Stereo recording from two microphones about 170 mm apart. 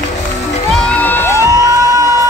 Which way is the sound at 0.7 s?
5° left (ahead or behind).